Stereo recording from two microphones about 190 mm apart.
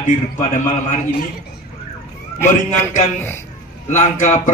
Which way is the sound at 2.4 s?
10° left (ahead or behind).